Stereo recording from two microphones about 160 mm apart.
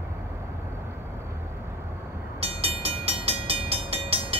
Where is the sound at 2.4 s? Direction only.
35° right (ahead or behind).